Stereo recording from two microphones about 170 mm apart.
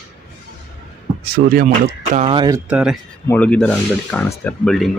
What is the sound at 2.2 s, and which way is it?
Speech, 25° right (ahead or behind).